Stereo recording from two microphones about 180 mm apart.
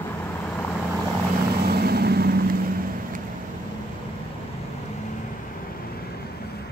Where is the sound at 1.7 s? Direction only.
60° right (ahead or behind).